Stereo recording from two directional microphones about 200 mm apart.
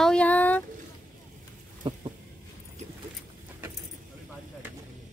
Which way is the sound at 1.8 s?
25° right (ahead or behind).